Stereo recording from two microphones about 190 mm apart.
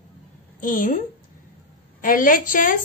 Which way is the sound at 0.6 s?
45° left (ahead or behind).